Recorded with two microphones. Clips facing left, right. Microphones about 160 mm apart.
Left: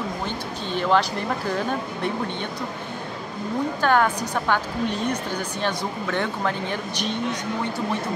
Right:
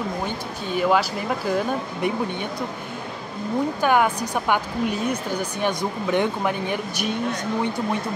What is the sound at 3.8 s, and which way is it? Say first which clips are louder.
Speech: even; 10° right (ahead or behind).